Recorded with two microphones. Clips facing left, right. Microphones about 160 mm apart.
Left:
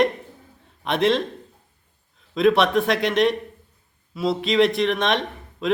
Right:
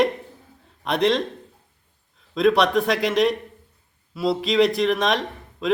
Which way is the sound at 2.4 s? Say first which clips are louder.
Even; centre (ahead or behind).